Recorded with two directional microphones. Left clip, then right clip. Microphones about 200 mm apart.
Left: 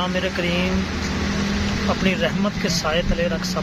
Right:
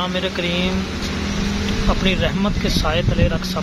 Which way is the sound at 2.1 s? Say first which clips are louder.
Right 2 dB; 5° right (ahead or behind).